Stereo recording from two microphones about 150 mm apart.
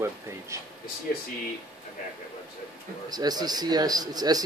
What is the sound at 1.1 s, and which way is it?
Speech, 70° left (ahead or behind).